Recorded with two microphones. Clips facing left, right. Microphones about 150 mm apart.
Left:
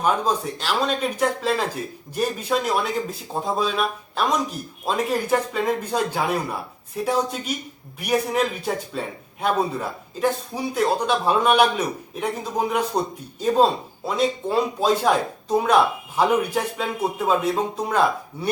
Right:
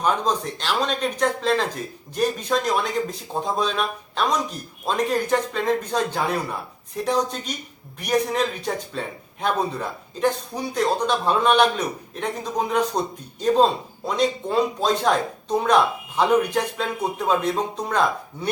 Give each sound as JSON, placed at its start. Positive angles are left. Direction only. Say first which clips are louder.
{"t": 0.0, "sound": "a man's voice", "louder": "left 1 dB", "side_deg": 5}